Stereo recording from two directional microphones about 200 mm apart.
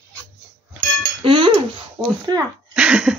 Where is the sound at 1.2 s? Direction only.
25° right (ahead or behind).